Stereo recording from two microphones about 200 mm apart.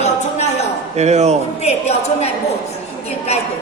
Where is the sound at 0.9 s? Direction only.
35° right (ahead or behind).